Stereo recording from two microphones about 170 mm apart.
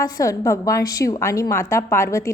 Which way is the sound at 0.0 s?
20° left (ahead or behind).